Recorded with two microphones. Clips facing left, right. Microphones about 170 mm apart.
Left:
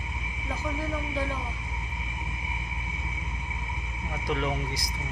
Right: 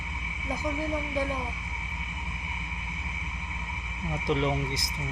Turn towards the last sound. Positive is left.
turn(degrees=-25)  # may be behind; listen again after turning